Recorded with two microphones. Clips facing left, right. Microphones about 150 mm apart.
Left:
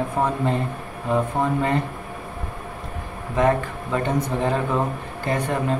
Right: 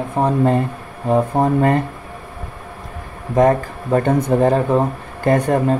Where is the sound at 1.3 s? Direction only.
45° right (ahead or behind).